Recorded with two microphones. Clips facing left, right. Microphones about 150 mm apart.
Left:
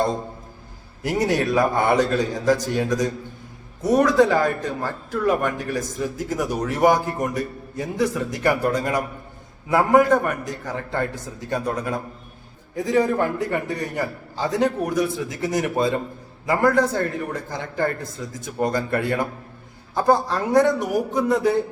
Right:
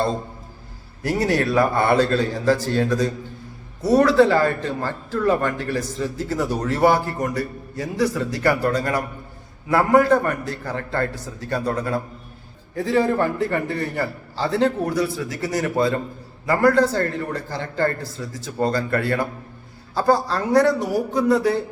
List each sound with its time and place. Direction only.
1.0 s a man's voice: 20° left (ahead or behind)